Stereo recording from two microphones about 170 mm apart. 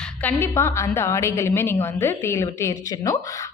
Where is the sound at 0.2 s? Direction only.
10° left (ahead or behind).